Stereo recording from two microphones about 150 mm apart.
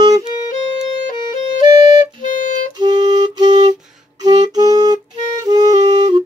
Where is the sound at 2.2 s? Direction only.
60° left (ahead or behind).